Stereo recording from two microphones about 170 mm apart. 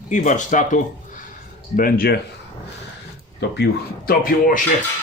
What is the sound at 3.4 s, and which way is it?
Speech, 75° left (ahead or behind).